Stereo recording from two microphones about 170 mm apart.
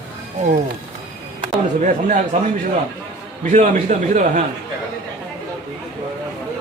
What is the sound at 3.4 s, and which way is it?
A man's voice, 45° right (ahead or behind).